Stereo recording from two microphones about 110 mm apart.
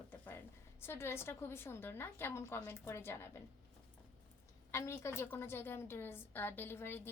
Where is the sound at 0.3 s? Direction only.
20° left (ahead or behind).